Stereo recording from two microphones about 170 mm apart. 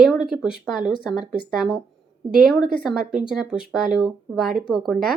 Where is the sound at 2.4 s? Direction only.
Centre (ahead or behind).